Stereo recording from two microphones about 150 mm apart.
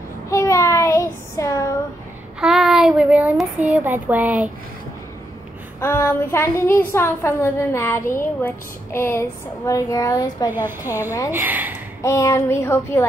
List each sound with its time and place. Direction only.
0.3 s child singing: 20° left (ahead or behind)
2.4 s child singing: centre (ahead or behind)
3.6 s speech: 10° right (ahead or behind)
5.8 s a woman's voice: 15° left (ahead or behind)
10.5 s speech: 15° right (ahead or behind)
12.0 s a woman's voice: 20° left (ahead or behind)